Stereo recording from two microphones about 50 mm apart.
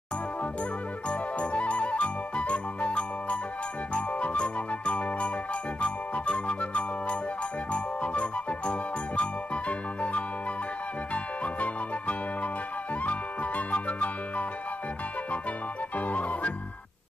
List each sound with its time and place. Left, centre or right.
1.0 s music: left
11.4 s music: left
16.0 s music: left